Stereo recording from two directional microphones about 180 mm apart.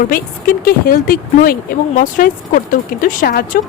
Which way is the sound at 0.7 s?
55° left (ahead or behind).